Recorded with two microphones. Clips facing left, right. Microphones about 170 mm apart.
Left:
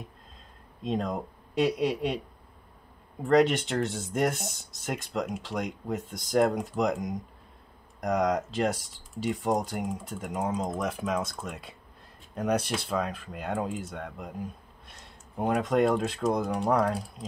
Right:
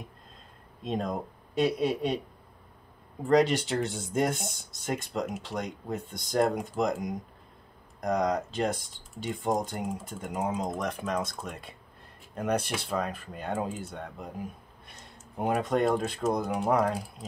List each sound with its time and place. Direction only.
0.8 s speech: centre (ahead or behind)
3.2 s speech: centre (ahead or behind)